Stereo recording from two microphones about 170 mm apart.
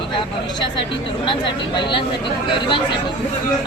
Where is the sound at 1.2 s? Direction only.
25° left (ahead or behind).